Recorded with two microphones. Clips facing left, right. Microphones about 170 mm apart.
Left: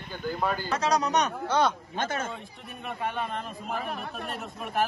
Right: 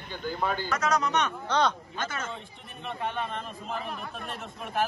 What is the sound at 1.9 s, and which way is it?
Speech, 50° left (ahead or behind).